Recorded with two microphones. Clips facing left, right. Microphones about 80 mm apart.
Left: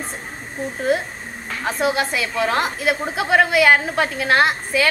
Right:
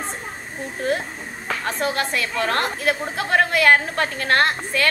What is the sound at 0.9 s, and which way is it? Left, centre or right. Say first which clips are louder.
A woman's voice: left 5 dB; centre.